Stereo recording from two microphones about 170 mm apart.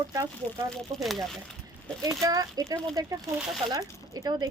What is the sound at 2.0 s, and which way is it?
Speech, 20° right (ahead or behind).